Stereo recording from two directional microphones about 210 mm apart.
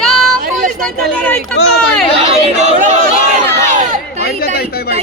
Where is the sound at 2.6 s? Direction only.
35° right (ahead or behind).